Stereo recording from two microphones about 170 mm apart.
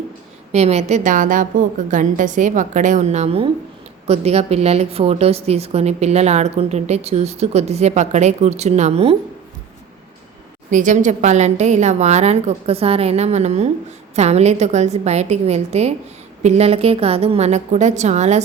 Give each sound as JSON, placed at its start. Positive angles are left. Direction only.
{"t": 0.5, "sound": "a woman's voice", "side_deg": -40}
{"t": 10.7, "sound": "a woman's voice", "side_deg": -50}